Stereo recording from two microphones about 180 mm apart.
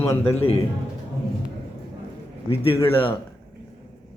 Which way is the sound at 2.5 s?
30° left (ahead or behind).